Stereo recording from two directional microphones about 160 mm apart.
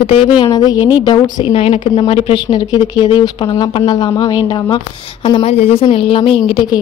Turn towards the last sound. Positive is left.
turn(degrees=35)  # may be behind; listen again after turning